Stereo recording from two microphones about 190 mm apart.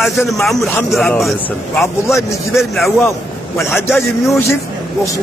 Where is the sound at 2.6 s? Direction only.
Centre (ahead or behind).